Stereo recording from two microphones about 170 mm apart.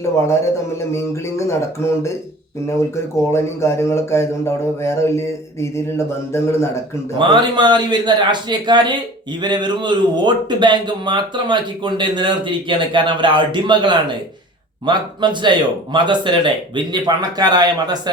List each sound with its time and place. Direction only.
0.8 s speech: 15° left (ahead or behind)
7.2 s a man's voice: 25° right (ahead or behind)